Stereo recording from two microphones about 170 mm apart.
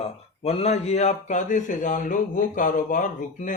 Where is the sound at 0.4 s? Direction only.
40° left (ahead or behind).